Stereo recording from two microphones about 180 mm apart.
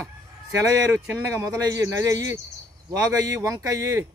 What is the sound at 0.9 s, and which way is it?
Speech, 15° right (ahead or behind).